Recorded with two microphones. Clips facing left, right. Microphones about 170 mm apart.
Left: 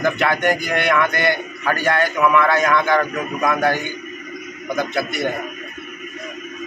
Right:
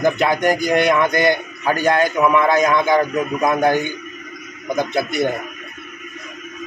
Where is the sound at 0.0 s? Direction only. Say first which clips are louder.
Right 2 dB; 15° right (ahead or behind).